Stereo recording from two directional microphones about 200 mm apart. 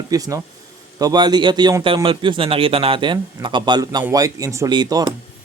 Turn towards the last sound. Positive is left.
turn(degrees=-20)  # may be behind; listen again after turning